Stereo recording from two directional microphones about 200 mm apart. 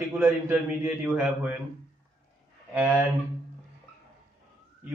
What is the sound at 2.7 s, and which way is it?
Speech, 10° right (ahead or behind).